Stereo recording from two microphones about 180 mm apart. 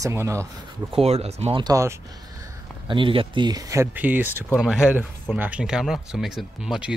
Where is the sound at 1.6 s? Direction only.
15° right (ahead or behind).